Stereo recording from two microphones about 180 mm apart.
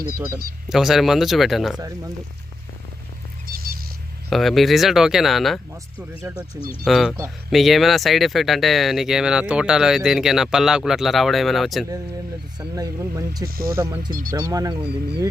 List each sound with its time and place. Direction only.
0.7 s speech: centre (ahead or behind)
3.4 s a sound: 55° right (ahead or behind)
4.3 s speech: centre (ahead or behind)
12.5 s speech: 20° right (ahead or behind)
13.5 s speech: 55° right (ahead or behind)
14.5 s speech: 20° right (ahead or behind)
14.8 s speech: 65° right (ahead or behind)